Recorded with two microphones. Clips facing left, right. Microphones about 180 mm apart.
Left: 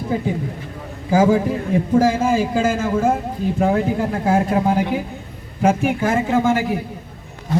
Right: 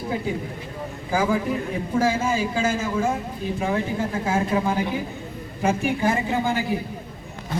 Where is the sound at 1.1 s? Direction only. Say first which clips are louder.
Left 7 dB; 40° left (ahead or behind).